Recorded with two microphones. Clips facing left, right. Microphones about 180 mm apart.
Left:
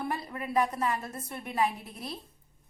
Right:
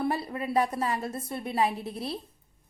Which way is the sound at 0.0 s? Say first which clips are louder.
Right 5 dB; 30° right (ahead or behind).